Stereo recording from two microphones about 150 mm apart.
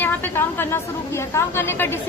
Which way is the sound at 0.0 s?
15° left (ahead or behind).